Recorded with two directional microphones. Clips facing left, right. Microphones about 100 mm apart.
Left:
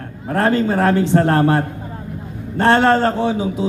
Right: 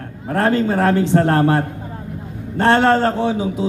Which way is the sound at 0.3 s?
30° left (ahead or behind).